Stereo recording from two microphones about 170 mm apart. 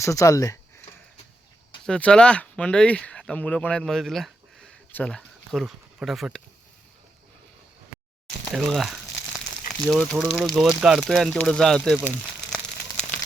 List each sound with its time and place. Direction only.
0.0 s speech: 20° left (ahead or behind)
1.8 s speech: 5° left (ahead or behind)
8.5 s speech: centre (ahead or behind)